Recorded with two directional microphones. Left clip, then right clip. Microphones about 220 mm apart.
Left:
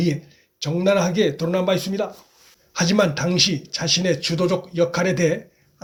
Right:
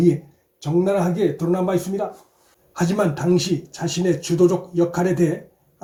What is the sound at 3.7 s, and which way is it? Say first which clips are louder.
Speech: left 2 dB; 25° left (ahead or behind).